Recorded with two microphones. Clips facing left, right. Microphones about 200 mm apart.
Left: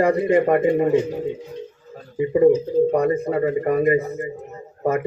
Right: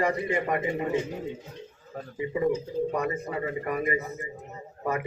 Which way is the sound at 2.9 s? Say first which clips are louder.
Left 10 dB; 40° left (ahead or behind).